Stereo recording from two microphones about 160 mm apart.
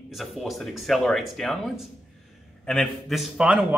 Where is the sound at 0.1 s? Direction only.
Centre (ahead or behind).